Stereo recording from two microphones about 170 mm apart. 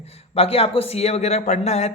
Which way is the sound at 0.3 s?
35° left (ahead or behind).